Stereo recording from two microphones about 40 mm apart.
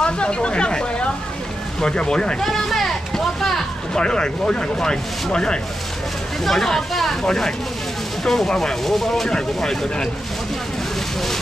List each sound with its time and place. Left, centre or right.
0.0 s speech: left
2.4 s a sound: centre
3.9 s speech: centre
6.4 s speech: centre
7.2 s speech: centre
8.2 s speech: centre